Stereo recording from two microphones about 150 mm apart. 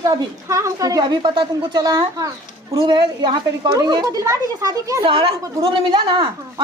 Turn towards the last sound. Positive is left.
turn(degrees=-35)  # may be behind; listen again after turning